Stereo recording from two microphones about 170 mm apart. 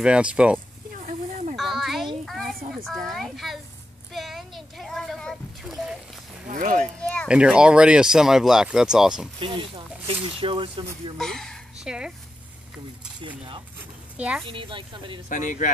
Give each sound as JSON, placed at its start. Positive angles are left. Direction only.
{"t": 0.0, "sound": "speech", "side_deg": -5}
{"t": 1.6, "sound": "a sound", "side_deg": 0}
{"t": 4.1, "sound": "splash", "side_deg": 0}
{"t": 6.5, "sound": "speech", "side_deg": -50}
{"t": 7.0, "sound": "a sound", "side_deg": 5}
{"t": 7.2, "sound": "speech", "side_deg": -5}
{"t": 9.4, "sound": "speech", "side_deg": -30}
{"t": 11.1, "sound": "speech", "side_deg": 5}
{"t": 14.1, "sound": "speech", "side_deg": -5}
{"t": 14.5, "sound": "speech", "side_deg": -30}
{"t": 15.2, "sound": "speech", "side_deg": 50}